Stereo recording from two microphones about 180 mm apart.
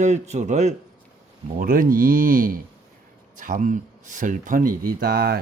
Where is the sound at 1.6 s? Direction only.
50° right (ahead or behind).